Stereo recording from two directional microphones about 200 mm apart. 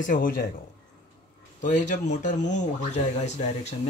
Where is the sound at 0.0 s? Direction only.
45° left (ahead or behind).